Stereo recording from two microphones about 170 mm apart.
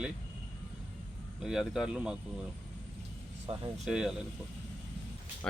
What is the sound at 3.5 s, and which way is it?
Speech, 30° right (ahead or behind).